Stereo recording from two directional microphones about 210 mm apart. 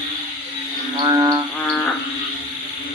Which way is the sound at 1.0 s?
20° right (ahead or behind).